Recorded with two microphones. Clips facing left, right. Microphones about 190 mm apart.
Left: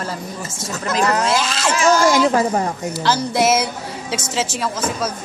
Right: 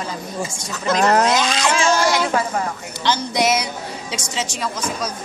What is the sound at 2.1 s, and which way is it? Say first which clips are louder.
Speech: left 4 dB; 35° left (ahead or behind).